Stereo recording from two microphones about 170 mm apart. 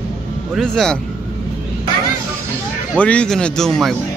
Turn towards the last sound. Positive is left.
turn(degrees=0)  # may be behind; listen again after turning